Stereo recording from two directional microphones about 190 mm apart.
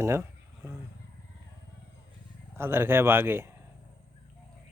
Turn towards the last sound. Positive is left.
turn(degrees=-10)  # may be behind; listen again after turning